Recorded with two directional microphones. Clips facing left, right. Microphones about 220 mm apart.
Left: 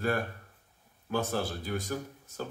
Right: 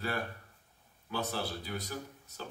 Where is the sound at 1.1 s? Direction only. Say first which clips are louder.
Left 5 dB; 50° left (ahead or behind).